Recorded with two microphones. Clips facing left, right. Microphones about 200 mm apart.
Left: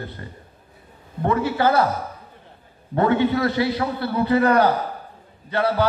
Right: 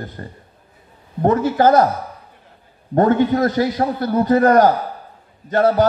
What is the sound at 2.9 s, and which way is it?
A man's voice, 45° right (ahead or behind).